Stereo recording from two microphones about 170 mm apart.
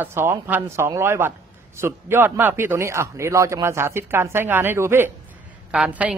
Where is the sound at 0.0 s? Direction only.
15° right (ahead or behind).